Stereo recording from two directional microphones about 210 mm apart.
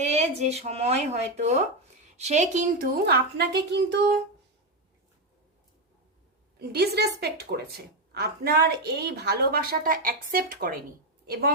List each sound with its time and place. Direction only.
0.0 s a woman's voice: 30° right (ahead or behind); by 4.0 s 55° right (ahead or behind)
6.6 s a woman's voice: 50° right (ahead or behind)